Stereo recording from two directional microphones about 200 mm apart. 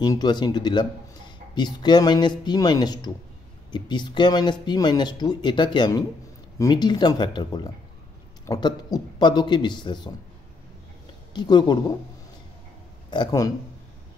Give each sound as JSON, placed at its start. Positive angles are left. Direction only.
{"t": 0.0, "sound": "speech", "side_deg": 20}
{"t": 11.3, "sound": "speech", "side_deg": 20}
{"t": 13.1, "sound": "speech", "side_deg": 20}